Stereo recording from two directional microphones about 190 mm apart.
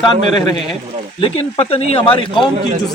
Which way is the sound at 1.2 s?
30° left (ahead or behind).